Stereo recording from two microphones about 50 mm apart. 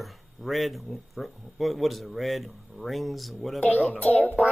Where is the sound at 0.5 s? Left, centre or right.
Centre.